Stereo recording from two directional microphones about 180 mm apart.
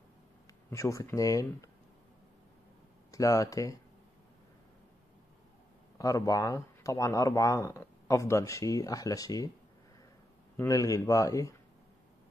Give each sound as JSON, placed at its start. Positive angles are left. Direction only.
{"t": 0.7, "sound": "speech", "side_deg": 15}
{"t": 3.1, "sound": "speech", "side_deg": 20}
{"t": 5.9, "sound": "speech", "side_deg": 20}
{"t": 10.6, "sound": "speech", "side_deg": 20}